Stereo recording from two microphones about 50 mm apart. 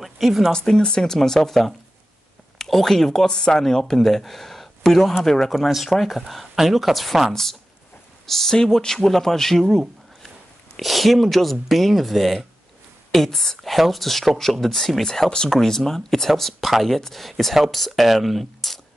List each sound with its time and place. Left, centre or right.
0.0 s a sound: centre
0.5 s speech: centre
8.3 s a man's voice: centre
13.6 s speech: centre